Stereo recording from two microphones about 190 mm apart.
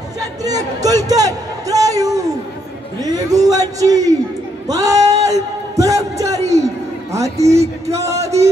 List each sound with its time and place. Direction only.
0.2 s a man's voice: 20° right (ahead or behind)
4.6 s a sound: 20° right (ahead or behind)
7.9 s speech: 15° right (ahead or behind)